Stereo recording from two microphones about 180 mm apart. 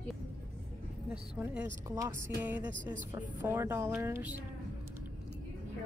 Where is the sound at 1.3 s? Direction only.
5° right (ahead or behind).